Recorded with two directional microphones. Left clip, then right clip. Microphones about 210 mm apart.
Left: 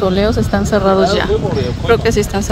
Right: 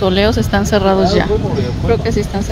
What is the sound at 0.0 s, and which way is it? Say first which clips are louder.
Speech: right 1 dB; centre (ahead or behind).